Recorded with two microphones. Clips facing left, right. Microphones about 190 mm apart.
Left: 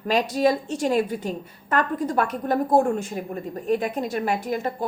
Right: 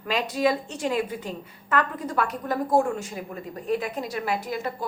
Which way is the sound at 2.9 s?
55° left (ahead or behind).